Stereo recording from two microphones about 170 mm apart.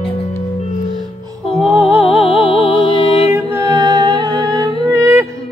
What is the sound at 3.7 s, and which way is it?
Humming, 25° right (ahead or behind).